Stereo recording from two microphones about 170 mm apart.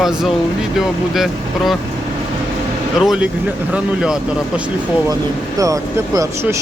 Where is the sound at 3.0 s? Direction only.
Centre (ahead or behind).